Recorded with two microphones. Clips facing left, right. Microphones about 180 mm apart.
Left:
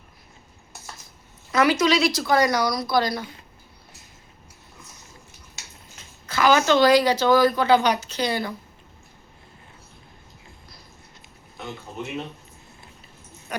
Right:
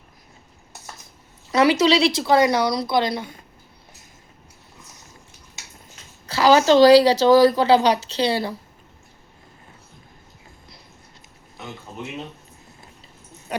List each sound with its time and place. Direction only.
1.8 s a woman's voice: 30° right (ahead or behind)
6.2 s a woman's voice: 35° right (ahead or behind)
13.5 s dog: 30° right (ahead or behind)